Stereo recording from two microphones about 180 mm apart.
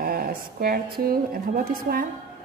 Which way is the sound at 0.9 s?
55° right (ahead or behind).